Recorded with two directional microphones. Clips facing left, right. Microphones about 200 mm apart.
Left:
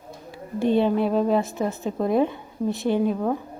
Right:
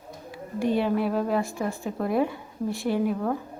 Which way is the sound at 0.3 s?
25° left (ahead or behind).